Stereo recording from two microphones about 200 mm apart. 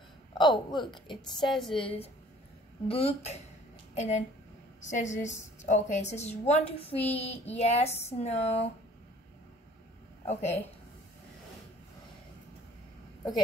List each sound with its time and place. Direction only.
0.3 s speech: 20° left (ahead or behind)
1.4 s a woman's voice: centre (ahead or behind)
1.8 s a woman's voice: 30° left (ahead or behind)
10.2 s a woman's voice: 35° left (ahead or behind)